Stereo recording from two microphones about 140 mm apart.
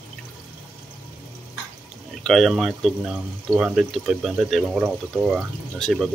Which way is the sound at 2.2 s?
5° left (ahead or behind).